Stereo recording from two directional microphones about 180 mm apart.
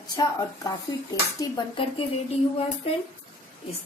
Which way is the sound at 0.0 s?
20° left (ahead or behind).